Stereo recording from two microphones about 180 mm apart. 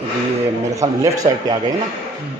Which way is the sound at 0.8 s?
20° right (ahead or behind).